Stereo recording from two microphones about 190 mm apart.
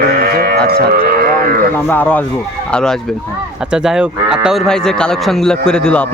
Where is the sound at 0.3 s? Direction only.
55° right (ahead or behind).